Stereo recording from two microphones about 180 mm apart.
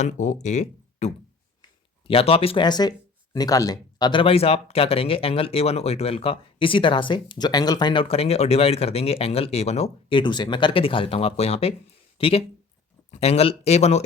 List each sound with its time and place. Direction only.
0.0 s speech: 40° left (ahead or behind)